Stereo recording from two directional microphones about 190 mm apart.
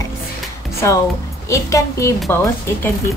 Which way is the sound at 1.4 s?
15° left (ahead or behind).